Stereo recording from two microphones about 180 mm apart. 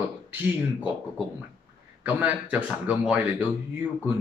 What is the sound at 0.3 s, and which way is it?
A woman's voice, 10° right (ahead or behind).